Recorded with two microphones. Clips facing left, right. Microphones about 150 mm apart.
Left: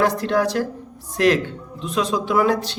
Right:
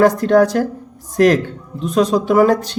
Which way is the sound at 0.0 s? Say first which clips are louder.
Right 7 dB; 45° right (ahead or behind).